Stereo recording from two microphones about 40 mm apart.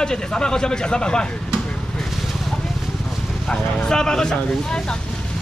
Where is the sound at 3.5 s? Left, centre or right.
Left.